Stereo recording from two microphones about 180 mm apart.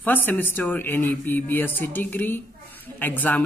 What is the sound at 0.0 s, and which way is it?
A woman's voice, 10° left (ahead or behind).